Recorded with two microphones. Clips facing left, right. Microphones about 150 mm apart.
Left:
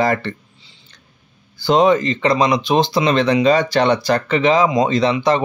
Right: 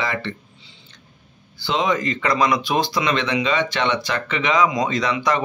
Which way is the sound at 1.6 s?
40° left (ahead or behind).